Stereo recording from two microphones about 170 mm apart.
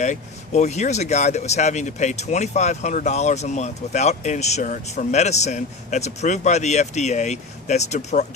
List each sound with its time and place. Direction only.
0.0 s speech: 45° left (ahead or behind)